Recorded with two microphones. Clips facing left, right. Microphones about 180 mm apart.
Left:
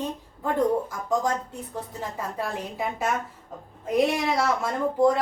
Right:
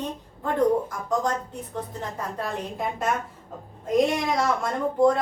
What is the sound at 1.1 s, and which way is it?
A woman's voice, 10° left (ahead or behind).